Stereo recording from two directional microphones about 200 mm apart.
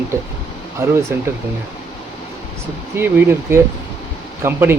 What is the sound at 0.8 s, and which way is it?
Speech, 15° right (ahead or behind).